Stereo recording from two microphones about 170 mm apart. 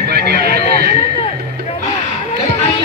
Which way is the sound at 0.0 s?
70° right (ahead or behind).